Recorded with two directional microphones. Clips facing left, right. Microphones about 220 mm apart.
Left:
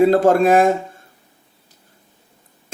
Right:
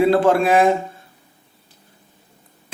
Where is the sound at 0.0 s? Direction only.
40° left (ahead or behind).